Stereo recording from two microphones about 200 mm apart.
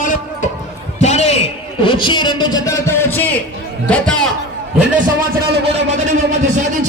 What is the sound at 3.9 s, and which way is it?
Speech, 5° left (ahead or behind).